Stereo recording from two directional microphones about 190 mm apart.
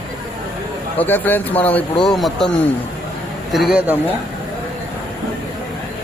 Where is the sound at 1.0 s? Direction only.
10° left (ahead or behind).